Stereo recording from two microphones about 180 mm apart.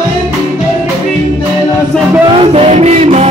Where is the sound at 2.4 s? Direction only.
35° right (ahead or behind).